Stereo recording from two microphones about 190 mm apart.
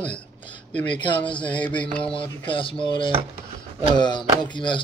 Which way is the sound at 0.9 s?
25° left (ahead or behind).